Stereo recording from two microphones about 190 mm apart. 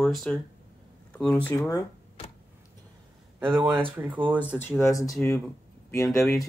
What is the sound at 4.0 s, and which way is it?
Speech, 10° right (ahead or behind).